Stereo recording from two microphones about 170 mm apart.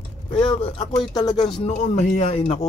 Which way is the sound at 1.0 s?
25° left (ahead or behind).